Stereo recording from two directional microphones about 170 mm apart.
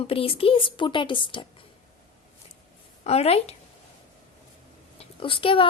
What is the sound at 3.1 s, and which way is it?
Speech, 40° left (ahead or behind).